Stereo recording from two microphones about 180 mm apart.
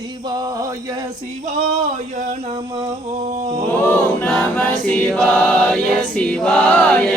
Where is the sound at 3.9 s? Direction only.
10° left (ahead or behind).